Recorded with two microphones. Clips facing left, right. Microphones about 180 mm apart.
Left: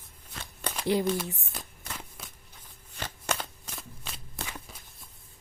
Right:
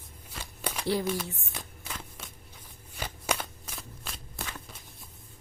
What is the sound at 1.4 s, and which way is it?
Shuffling cards, centre (ahead or behind).